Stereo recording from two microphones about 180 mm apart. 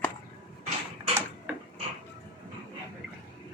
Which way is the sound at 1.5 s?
10° right (ahead or behind).